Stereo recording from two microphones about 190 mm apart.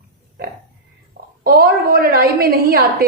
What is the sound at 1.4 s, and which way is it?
A woman's voice, 55° right (ahead or behind).